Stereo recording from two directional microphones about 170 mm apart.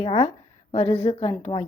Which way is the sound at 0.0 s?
35° left (ahead or behind).